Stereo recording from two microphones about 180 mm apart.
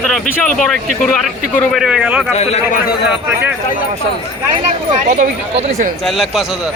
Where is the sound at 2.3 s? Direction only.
35° left (ahead or behind).